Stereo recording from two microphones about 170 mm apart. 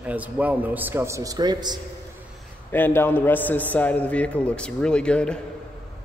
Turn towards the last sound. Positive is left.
turn(degrees=5)  # may be behind; listen again after turning